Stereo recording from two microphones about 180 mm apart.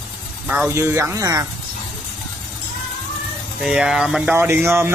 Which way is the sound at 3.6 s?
5° right (ahead or behind).